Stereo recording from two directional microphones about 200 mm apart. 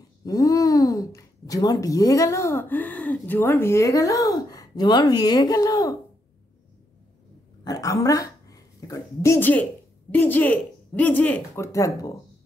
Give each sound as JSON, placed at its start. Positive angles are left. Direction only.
{"t": 0.2, "sound": "speech", "side_deg": 15}
{"t": 7.6, "sound": "speech", "side_deg": 15}